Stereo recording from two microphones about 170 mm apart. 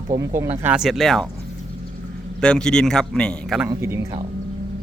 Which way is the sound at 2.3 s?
5° left (ahead or behind).